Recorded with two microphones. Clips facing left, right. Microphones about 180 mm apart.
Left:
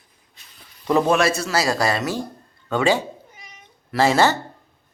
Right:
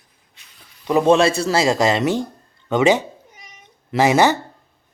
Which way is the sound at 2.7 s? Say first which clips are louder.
Right 4 dB; 20° right (ahead or behind).